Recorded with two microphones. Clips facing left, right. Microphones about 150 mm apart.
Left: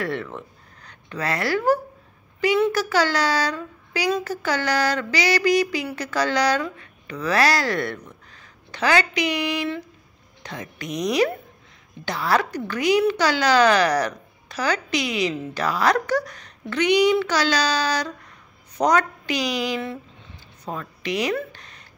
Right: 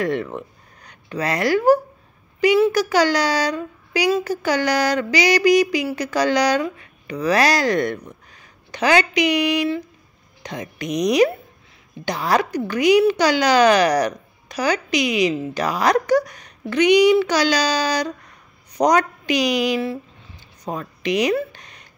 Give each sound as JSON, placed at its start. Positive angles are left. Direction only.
{"t": 0.0, "sound": "speech", "side_deg": -15}